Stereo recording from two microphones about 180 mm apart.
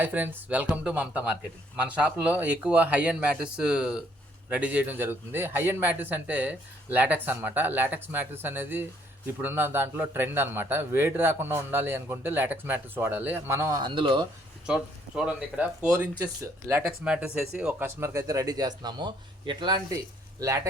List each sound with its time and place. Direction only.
0.0 s a man's voice: 10° right (ahead or behind); by 14.3 s 25° right (ahead or behind)
14.7 s a man's voice: 5° right (ahead or behind)
16.8 s speech: 5° right (ahead or behind)
17.8 s speech: 15° right (ahead or behind)